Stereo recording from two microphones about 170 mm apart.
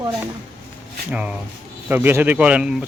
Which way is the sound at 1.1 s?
5° right (ahead or behind).